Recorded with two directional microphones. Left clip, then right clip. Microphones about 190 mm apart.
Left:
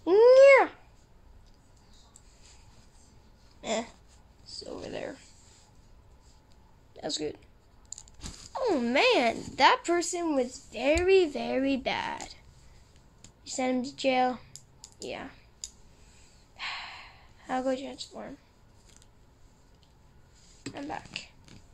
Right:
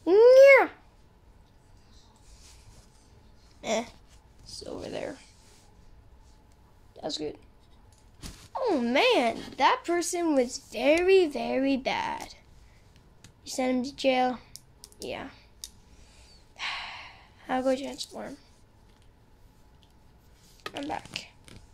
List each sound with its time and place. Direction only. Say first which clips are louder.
0.0 s babbling: right 2 dB; 5° right (ahead or behind)
3.6 s a sound: right 2 dB; 5° right (ahead or behind)
7.0 s speech: even; 5° left (ahead or behind)
8.5 s speech: right 1 dB; centre (ahead or behind)
9.6 s speech: left 2 dB; 20° left (ahead or behind)
9.9 s speech: right 1 dB; centre (ahead or behind)
10.2 s speech: right 3 dB; 20° right (ahead or behind); by 12.4 s 5° right (ahead or behind)
13.2 s computer keyboard: right 1 dB; 5° right (ahead or behind)
16.5 s a sound: right 3 dB; 10° right (ahead or behind)
20.7 s a sound: right 3 dB; 15° right (ahead or behind)